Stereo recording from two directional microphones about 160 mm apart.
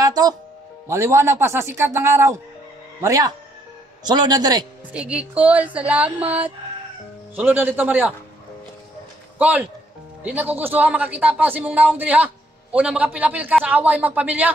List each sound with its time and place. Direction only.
0.0 s music: 25° right (ahead or behind)
0.8 s a man's voice: 15° right (ahead or behind)
4.9 s speech: 5° right (ahead or behind)
9.4 s speech: 10° right (ahead or behind)